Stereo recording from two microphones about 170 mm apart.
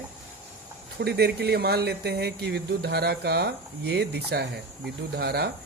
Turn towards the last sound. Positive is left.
turn(degrees=-70)  # may be behind; listen again after turning